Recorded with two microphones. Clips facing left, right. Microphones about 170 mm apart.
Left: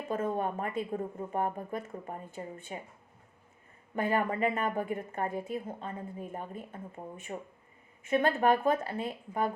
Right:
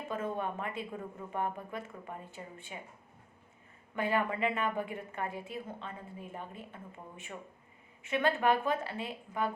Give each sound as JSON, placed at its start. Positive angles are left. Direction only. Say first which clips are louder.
{"t": 0.1, "sound": "a woman's voice", "louder": "left 4 dB", "side_deg": 45}
{"t": 3.9, "sound": "a woman's voice", "louder": "left 2 dB", "side_deg": 45}